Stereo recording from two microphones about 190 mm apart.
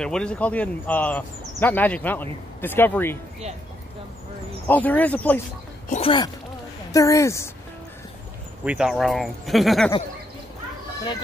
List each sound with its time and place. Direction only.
0.0 s speech: 5° left (ahead or behind)
4.6 s speech: 10° left (ahead or behind)
5.9 s speech: 30° left (ahead or behind); by 7.5 s 15° left (ahead or behind)
8.6 s speech: 5° right (ahead or behind)